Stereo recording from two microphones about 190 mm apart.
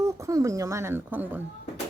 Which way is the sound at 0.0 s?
15° right (ahead or behind).